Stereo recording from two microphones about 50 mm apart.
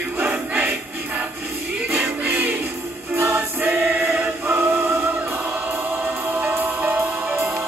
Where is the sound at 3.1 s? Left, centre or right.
Right.